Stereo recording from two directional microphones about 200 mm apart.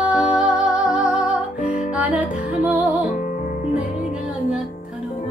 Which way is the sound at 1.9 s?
10° right (ahead or behind).